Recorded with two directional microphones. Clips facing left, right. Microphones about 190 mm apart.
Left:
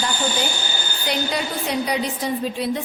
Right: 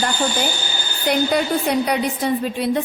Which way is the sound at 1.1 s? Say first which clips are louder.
Right 7 dB; 55° right (ahead or behind).